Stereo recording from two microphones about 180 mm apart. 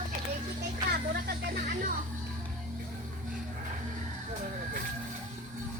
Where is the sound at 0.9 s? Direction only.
60° right (ahead or behind).